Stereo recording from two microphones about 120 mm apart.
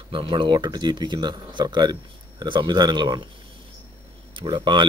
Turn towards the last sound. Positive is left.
turn(degrees=-40)  # may be behind; listen again after turning